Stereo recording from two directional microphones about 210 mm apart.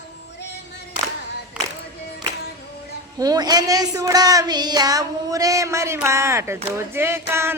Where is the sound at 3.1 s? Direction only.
20° right (ahead or behind).